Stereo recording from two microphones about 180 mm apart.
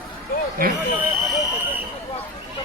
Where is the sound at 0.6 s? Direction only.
55° right (ahead or behind).